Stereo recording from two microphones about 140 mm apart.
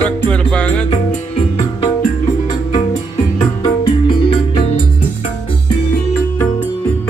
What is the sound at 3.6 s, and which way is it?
Music, 35° left (ahead or behind).